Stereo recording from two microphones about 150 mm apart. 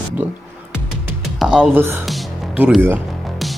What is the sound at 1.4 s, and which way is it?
A man's voice, 5° right (ahead or behind).